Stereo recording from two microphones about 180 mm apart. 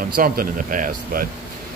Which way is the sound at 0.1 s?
55° right (ahead or behind).